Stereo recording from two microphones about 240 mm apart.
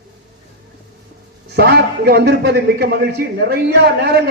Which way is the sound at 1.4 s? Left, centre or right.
Right.